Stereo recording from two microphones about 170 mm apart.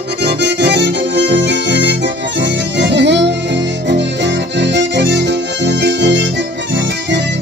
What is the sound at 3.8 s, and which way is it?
Accordion, 90° right.